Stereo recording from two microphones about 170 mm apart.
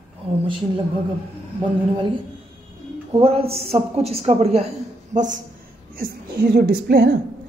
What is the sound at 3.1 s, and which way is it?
A woman's voice, 35° right (ahead or behind).